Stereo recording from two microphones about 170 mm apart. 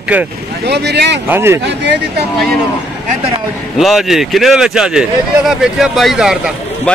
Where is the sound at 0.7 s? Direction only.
80° right.